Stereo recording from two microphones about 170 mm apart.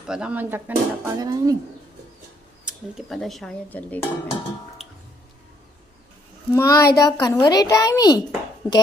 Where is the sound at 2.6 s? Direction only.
Centre (ahead or behind).